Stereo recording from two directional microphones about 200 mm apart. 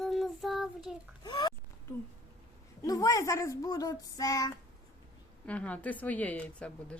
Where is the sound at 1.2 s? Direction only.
20° left (ahead or behind).